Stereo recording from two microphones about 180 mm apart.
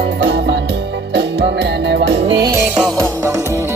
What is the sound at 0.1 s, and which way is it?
Music, 75° right (ahead or behind).